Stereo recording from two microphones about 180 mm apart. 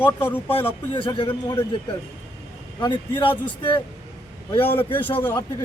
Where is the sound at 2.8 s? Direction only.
25° left (ahead or behind).